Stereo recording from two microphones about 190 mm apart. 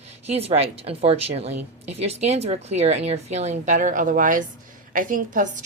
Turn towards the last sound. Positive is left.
turn(degrees=-45)  # may be behind; listen again after turning